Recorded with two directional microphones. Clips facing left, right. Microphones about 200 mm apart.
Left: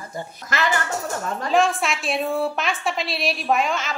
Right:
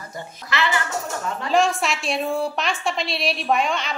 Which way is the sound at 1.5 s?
Centre (ahead or behind).